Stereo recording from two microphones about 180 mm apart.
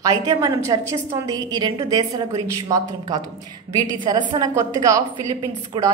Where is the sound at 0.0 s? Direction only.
20° right (ahead or behind).